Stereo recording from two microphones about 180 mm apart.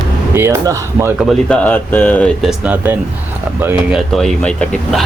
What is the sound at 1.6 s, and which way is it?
Speech, 10° left (ahead or behind).